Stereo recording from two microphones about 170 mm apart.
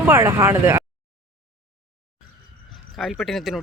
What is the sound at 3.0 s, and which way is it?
Speech, 5° left (ahead or behind).